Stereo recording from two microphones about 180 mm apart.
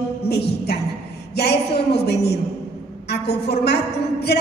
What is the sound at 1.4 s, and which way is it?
Speech, 65° left (ahead or behind).